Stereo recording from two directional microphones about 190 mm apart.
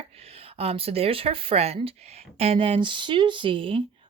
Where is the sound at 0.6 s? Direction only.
30° right (ahead or behind).